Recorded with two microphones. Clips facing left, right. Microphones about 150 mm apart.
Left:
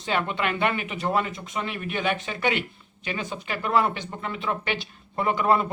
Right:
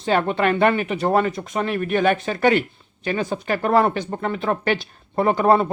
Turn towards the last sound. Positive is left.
turn(degrees=-40)  # may be behind; listen again after turning